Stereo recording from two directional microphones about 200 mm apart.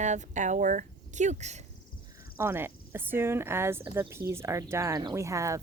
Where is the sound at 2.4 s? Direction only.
10° right (ahead or behind).